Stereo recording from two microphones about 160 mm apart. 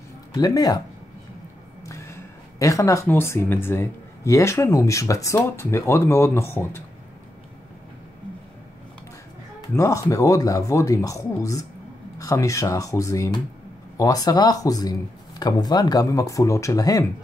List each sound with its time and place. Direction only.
0.3 s speech: 25° left (ahead or behind)
1.9 s speech: 15° left (ahead or behind)
9.8 s speech: 20° left (ahead or behind)